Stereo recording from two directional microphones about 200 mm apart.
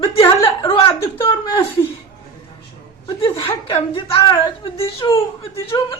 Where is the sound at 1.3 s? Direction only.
25° left (ahead or behind).